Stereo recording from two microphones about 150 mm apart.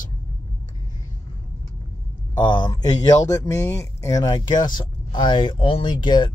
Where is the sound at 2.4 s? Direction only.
30° left (ahead or behind).